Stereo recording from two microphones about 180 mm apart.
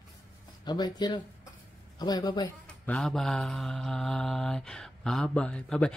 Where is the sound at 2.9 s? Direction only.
Centre (ahead or behind).